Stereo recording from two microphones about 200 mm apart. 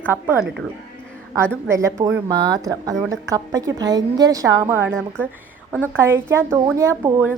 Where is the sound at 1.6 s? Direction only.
15° right (ahead or behind).